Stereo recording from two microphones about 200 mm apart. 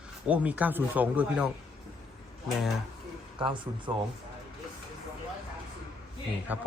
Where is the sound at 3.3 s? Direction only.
25° right (ahead or behind).